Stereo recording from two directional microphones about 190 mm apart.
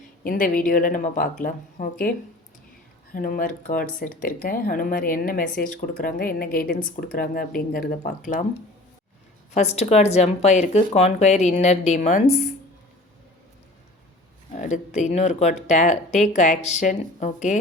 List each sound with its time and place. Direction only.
0.3 s speech: 50° left (ahead or behind)
9.6 s speech: 35° left (ahead or behind)
14.5 s speech: 40° left (ahead or behind)